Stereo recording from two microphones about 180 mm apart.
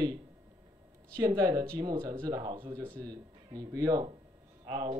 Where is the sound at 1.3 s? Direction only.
20° right (ahead or behind).